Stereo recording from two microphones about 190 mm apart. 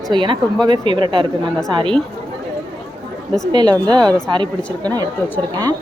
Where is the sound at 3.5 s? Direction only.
25° right (ahead or behind).